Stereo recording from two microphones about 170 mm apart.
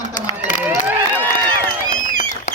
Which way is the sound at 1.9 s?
50° left (ahead or behind).